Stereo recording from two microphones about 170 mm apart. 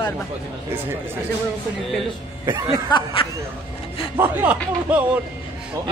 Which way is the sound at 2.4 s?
20° right (ahead or behind).